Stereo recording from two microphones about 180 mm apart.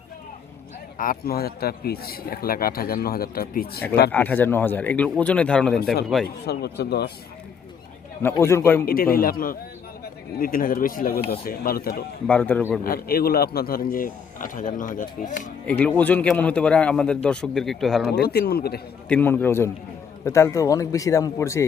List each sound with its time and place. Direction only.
0.9 s a man's voice: 50° left (ahead or behind)
4.1 s speech: 10° left (ahead or behind)
6.2 s a man's voice: 65° left (ahead or behind)
8.2 s speech: 15° left (ahead or behind)
8.9 s a man's voice: 55° left (ahead or behind)
12.3 s speech: 10° left (ahead or behind)
12.8 s speech: 55° left (ahead or behind)
15.6 s speech: 10° left (ahead or behind)
18.1 s a man's voice: 60° left (ahead or behind)
19.0 s speech: 10° left (ahead or behind)